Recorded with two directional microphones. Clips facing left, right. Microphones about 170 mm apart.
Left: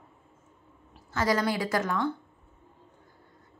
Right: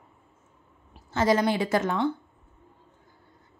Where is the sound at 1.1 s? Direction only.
25° right (ahead or behind).